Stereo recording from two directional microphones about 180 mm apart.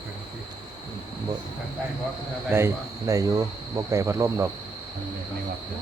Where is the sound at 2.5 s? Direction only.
15° right (ahead or behind).